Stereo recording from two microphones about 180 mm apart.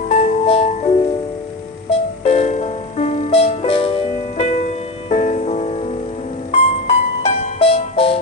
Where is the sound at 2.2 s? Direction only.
35° left (ahead or behind).